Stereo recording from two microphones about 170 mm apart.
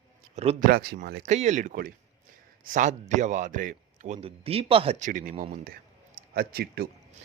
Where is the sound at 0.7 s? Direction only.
60° right (ahead or behind).